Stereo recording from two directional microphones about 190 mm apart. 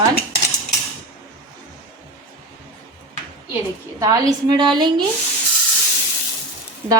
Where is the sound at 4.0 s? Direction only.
20° right (ahead or behind).